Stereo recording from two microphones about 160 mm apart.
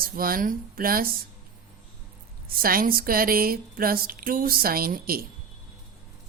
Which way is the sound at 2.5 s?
65° right (ahead or behind).